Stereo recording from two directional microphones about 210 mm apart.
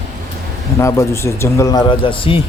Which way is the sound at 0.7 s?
15° left (ahead or behind).